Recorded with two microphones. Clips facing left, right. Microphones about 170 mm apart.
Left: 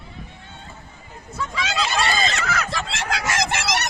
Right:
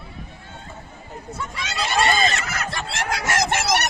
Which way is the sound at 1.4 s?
90° left.